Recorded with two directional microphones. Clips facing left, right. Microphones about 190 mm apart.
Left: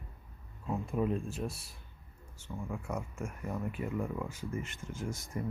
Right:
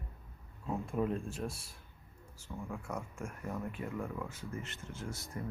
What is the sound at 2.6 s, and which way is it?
Speech, 5° left (ahead or behind).